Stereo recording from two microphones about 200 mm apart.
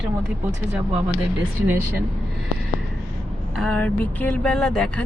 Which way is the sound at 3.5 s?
Centre (ahead or behind).